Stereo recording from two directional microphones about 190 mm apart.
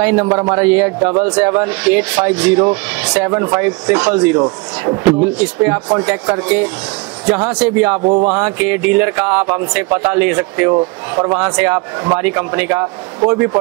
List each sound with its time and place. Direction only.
0.0 s speech: 10° right (ahead or behind)
8.0 s music: 30° right (ahead or behind)
8.3 s speech: 10° right (ahead or behind)
10.7 s speech: 25° right (ahead or behind)
11.3 s speech: 10° right (ahead or behind)